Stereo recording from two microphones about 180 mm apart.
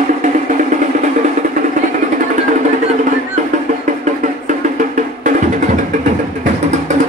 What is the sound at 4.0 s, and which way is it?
Music, 45° right (ahead or behind).